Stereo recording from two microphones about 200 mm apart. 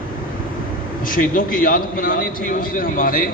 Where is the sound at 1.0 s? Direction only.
45° left (ahead or behind).